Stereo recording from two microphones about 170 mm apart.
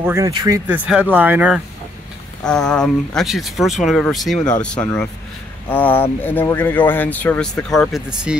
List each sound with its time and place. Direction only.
0.0 s speech: 15° right (ahead or behind)
0.3 s speech: 25° right (ahead or behind)
0.7 s speech: 5° right (ahead or behind)
2.4 s speech: 5° left (ahead or behind)
8.3 s speech: 5° right (ahead or behind)